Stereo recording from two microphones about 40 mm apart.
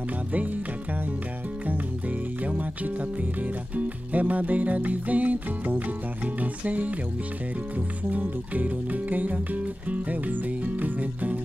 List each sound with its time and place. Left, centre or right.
2.4 s music: right
8.1 s music: right